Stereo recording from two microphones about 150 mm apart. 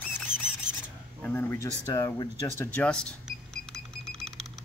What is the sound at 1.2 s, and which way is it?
Speech, 15° left (ahead or behind).